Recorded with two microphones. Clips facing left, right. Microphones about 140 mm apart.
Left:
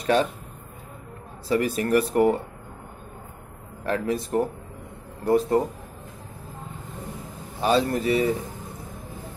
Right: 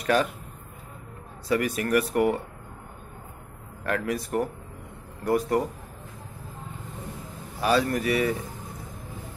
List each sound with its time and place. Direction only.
0.0 s a man's voice: 25° left (ahead or behind)
1.5 s speech: 30° left (ahead or behind)
3.8 s speech: 25° left (ahead or behind)
7.6 s speech: 25° left (ahead or behind)